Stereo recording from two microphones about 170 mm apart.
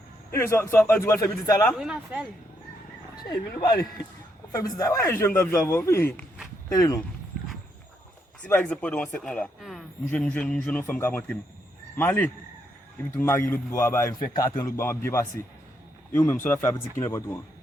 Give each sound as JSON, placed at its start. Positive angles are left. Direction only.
{"t": 0.3, "sound": "speech", "side_deg": 15}
{"t": 1.8, "sound": "speech", "side_deg": -5}
{"t": 3.2, "sound": "speech", "side_deg": 25}
{"t": 8.4, "sound": "speech", "side_deg": 10}